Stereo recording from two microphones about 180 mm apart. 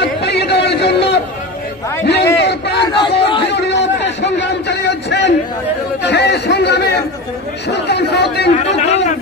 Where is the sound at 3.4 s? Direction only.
70° left (ahead or behind).